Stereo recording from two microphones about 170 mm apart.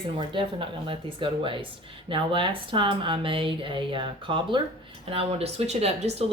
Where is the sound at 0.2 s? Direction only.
30° right (ahead or behind).